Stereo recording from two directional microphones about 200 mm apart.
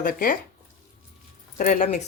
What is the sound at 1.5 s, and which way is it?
Speech, 40° left (ahead or behind).